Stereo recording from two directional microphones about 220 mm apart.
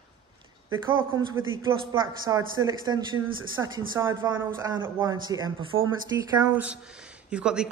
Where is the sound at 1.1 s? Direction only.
20° right (ahead or behind).